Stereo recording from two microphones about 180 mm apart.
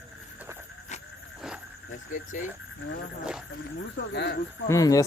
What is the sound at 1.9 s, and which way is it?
Speech, 45° left (ahead or behind).